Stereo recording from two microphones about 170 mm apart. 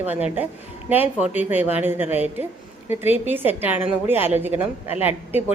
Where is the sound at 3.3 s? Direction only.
10° right (ahead or behind).